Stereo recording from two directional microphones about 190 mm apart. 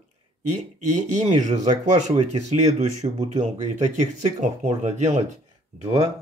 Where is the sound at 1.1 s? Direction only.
40° right (ahead or behind).